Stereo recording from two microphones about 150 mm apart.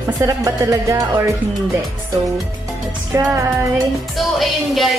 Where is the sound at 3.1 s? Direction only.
20° right (ahead or behind).